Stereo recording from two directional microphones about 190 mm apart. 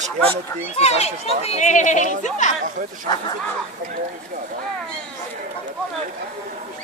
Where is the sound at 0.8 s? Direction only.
35° left (ahead or behind).